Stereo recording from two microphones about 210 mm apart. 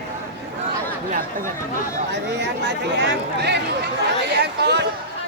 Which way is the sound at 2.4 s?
55° right (ahead or behind).